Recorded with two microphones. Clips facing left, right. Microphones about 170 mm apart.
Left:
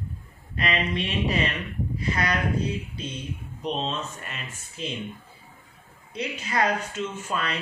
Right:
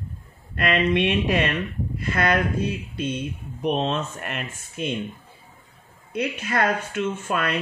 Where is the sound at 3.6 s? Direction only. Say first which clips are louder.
Right 6 dB; 60° right (ahead or behind).